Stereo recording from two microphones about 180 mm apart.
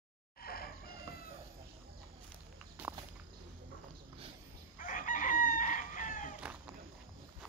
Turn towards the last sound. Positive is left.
turn(degrees=45)  # may be behind; listen again after turning